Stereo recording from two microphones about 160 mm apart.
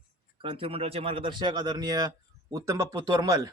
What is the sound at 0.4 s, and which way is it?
A man's voice, 35° right (ahead or behind).